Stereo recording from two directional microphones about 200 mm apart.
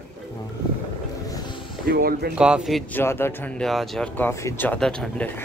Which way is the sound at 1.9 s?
50° right (ahead or behind).